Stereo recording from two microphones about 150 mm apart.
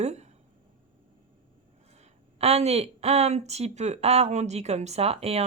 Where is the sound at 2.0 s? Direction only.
45° right (ahead or behind).